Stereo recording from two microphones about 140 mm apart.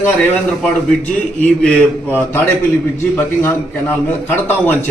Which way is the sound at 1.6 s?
10° left (ahead or behind).